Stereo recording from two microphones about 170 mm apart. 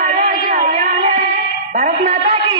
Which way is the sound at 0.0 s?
55° right (ahead or behind).